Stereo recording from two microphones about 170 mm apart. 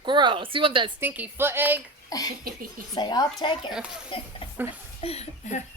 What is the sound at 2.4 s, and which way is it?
Speech, 55° right (ahead or behind).